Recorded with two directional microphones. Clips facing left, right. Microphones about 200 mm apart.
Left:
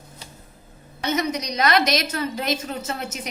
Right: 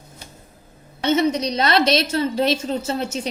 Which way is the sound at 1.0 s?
30° right (ahead or behind).